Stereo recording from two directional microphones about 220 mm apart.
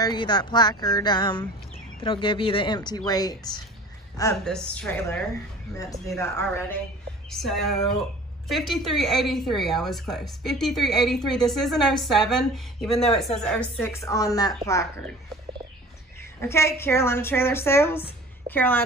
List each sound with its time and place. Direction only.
0.0 s a woman's voice: 20° left (ahead or behind)
7.2 s a woman's voice: centre (ahead or behind)
16.3 s a woman's voice: 10° left (ahead or behind)